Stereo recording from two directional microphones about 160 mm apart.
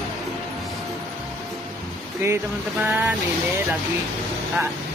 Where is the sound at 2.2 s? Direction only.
15° right (ahead or behind).